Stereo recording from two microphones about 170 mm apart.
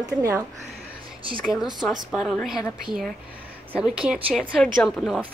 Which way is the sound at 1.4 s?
Centre (ahead or behind).